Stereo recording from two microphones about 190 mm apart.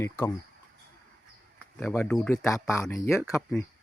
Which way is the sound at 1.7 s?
5° left (ahead or behind).